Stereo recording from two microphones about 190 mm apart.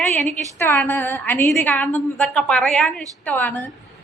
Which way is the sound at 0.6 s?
10° left (ahead or behind).